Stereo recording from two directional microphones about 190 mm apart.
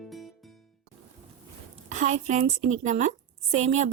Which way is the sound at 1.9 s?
40° right (ahead or behind).